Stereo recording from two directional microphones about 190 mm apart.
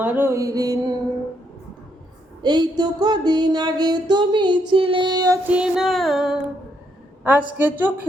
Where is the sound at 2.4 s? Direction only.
25° right (ahead or behind).